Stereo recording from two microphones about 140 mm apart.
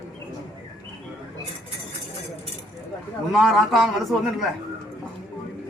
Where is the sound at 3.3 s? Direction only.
Centre (ahead or behind).